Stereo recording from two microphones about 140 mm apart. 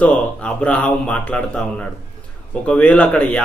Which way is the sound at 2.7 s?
10° left (ahead or behind).